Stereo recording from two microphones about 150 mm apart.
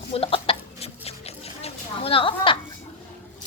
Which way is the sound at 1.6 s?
40° left (ahead or behind).